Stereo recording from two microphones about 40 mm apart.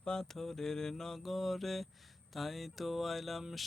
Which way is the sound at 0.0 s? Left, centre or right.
Centre.